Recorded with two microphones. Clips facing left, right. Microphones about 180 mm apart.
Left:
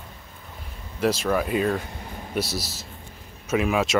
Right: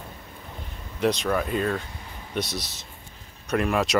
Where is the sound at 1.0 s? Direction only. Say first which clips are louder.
Left 1 dB; 5° left (ahead or behind).